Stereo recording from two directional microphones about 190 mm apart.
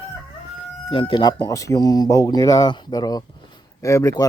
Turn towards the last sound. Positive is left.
turn(degrees=15)  # may be behind; listen again after turning